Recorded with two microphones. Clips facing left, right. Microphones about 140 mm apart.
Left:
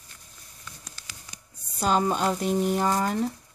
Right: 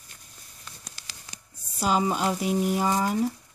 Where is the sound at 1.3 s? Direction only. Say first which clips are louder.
Right 1 dB; 80° right.